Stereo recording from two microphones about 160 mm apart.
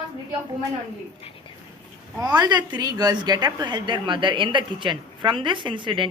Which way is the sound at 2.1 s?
25° right (ahead or behind).